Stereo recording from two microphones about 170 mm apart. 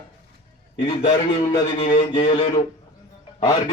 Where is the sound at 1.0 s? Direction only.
25° left (ahead or behind).